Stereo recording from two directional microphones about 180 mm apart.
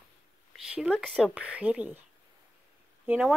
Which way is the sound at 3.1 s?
5° right (ahead or behind).